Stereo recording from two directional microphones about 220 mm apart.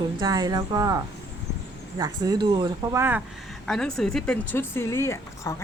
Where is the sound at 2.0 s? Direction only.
20° right (ahead or behind).